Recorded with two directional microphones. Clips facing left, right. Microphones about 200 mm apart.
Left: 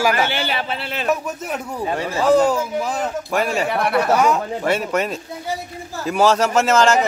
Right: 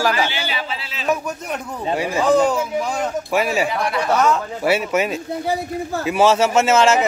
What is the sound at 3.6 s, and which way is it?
Speech, 60° left (ahead or behind).